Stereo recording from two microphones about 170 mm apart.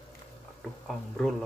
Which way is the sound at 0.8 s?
Centre (ahead or behind).